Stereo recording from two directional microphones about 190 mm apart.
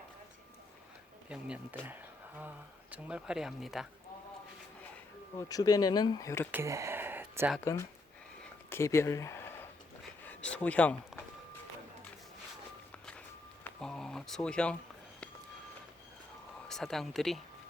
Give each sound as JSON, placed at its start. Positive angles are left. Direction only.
{"t": 1.8, "sound": "a sound", "side_deg": -10}
{"t": 2.9, "sound": "speech", "side_deg": -5}
{"t": 5.4, "sound": "speech", "side_deg": 20}
{"t": 6.5, "sound": "a sound", "side_deg": -15}
{"t": 7.6, "sound": "speech", "side_deg": 15}
{"t": 13.7, "sound": "speech", "side_deg": 5}
{"t": 16.6, "sound": "speech", "side_deg": 0}